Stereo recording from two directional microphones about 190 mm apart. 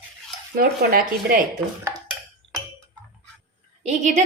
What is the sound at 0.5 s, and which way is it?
Speech, 50° right (ahead or behind).